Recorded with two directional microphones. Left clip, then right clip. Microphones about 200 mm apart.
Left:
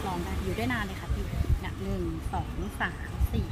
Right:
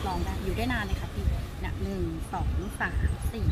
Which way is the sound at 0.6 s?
5° left (ahead or behind).